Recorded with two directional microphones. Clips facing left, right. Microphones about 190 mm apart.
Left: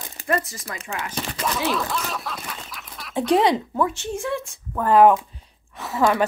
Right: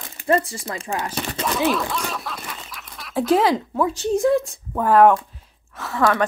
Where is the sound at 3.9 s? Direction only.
40° right (ahead or behind).